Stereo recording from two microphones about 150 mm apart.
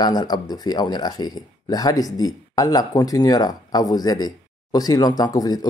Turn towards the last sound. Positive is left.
turn(degrees=25)  # may be behind; listen again after turning